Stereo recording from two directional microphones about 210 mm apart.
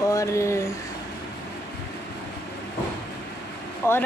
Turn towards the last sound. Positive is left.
turn(degrees=10)  # may be behind; listen again after turning